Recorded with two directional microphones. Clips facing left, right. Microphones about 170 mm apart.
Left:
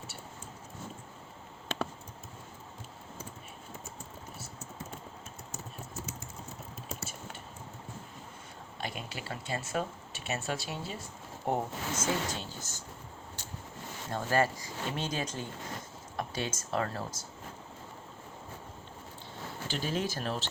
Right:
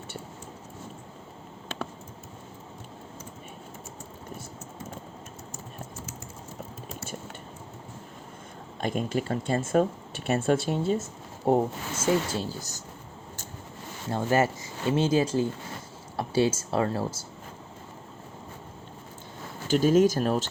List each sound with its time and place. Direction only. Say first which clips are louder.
8.8 s speech: right 12 dB; 45° right (ahead or behind)
11.4 s speech: right 8 dB; 30° right (ahead or behind)
14.1 s speech: right 5 dB; 25° right (ahead or behind)
19.6 s speech: right 14 dB; 45° right (ahead or behind)